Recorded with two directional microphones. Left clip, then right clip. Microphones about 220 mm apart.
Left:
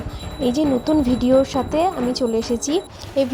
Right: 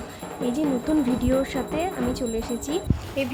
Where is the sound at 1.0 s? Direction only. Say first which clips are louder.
Left 7 dB; 10° left (ahead or behind).